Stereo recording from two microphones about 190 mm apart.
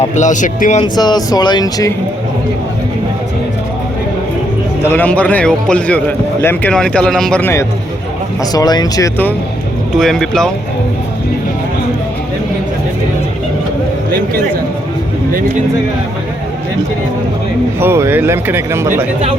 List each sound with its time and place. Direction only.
0.0 s speech: 40° left (ahead or behind)
0.9 s speech: 20° left (ahead or behind)
4.9 s speech: 10° left (ahead or behind)
10.0 s speech: centre (ahead or behind)
17.7 s speech: 10° right (ahead or behind)